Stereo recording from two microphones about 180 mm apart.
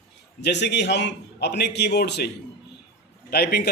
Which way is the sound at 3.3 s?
60° left (ahead or behind).